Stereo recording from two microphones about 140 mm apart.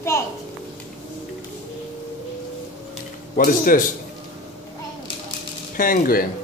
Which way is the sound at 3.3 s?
80° left.